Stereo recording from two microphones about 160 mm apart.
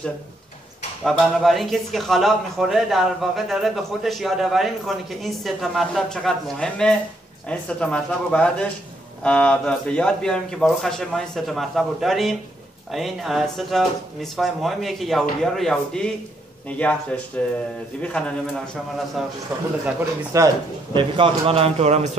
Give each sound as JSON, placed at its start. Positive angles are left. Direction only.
{"t": 1.0, "sound": "speech", "side_deg": 0}
{"t": 20.3, "sound": "a man's voice", "side_deg": -20}
{"t": 20.9, "sound": "speech", "side_deg": -30}